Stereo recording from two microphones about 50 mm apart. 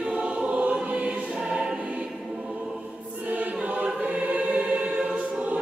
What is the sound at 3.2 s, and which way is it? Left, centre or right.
Choir, right.